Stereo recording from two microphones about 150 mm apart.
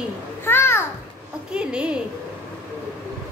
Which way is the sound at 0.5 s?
15° left (ahead or behind).